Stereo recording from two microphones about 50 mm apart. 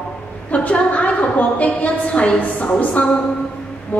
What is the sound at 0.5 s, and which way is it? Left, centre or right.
A woman's voice, left.